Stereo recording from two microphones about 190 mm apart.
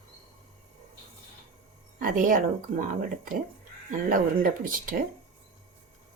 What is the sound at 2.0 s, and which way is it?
Speech, 45° right (ahead or behind).